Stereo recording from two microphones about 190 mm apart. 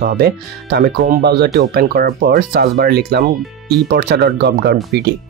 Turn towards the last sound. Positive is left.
turn(degrees=-60)  # may be behind; listen again after turning